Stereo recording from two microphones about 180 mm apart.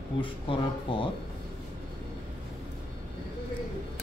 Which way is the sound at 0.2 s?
30° left (ahead or behind).